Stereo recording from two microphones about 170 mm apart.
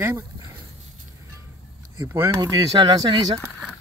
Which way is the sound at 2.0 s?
15° right (ahead or behind).